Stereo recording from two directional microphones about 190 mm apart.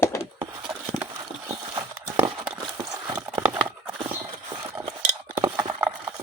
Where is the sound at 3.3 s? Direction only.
15° right (ahead or behind).